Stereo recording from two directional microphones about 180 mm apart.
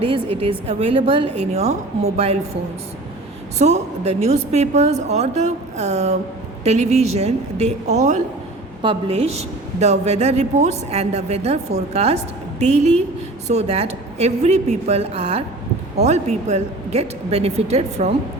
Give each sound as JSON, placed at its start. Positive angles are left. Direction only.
{"t": 0.0, "sound": "a woman's voice", "side_deg": -30}
{"t": 3.6, "sound": "a woman's voice", "side_deg": -40}